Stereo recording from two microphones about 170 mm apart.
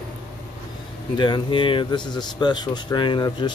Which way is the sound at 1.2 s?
25° left (ahead or behind).